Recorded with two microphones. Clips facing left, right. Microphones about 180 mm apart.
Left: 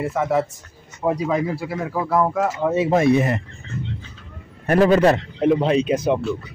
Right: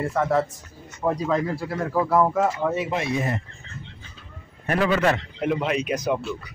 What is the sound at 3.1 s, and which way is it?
Speech, 75° left (ahead or behind).